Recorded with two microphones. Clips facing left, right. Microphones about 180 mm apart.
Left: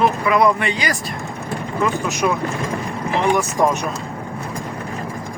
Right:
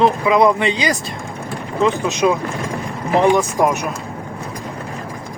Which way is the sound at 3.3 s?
10° right (ahead or behind).